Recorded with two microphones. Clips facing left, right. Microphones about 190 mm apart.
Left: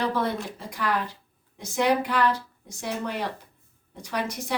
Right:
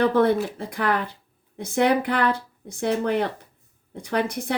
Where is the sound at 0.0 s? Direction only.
55° right (ahead or behind).